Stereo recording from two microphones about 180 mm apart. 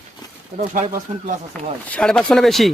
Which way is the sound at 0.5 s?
45° right (ahead or behind).